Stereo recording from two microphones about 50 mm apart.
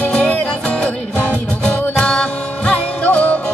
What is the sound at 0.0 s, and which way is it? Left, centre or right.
Music, left.